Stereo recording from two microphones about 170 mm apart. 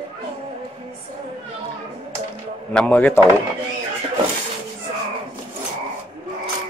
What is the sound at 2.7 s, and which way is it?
Speech, 10° left (ahead or behind).